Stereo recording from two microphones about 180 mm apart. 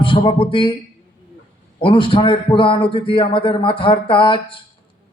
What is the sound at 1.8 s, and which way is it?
A man's voice, 30° left (ahead or behind).